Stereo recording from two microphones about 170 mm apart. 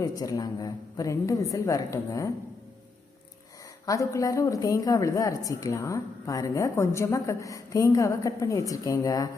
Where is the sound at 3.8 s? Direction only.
20° left (ahead or behind).